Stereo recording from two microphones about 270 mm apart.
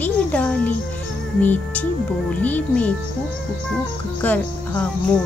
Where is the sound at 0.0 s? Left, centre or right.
Centre.